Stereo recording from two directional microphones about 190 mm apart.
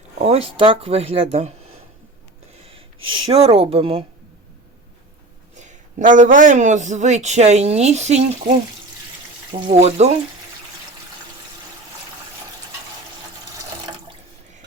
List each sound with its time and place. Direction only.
0.3 s a man's voice: 30° right (ahead or behind)
3.3 s a man's voice: 30° right (ahead or behind)
5.5 s a man's voice: 40° right (ahead or behind)